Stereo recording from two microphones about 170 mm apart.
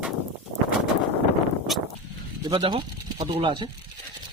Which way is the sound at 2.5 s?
30° right (ahead or behind).